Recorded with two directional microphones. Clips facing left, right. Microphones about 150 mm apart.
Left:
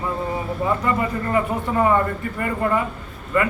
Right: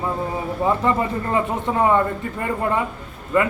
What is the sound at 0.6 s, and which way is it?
Speech, 25° right (ahead or behind).